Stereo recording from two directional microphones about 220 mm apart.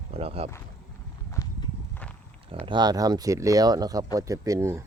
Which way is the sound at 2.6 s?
20° right (ahead or behind).